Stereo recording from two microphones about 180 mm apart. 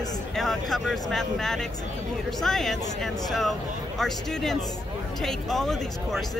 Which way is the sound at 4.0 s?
Centre (ahead or behind).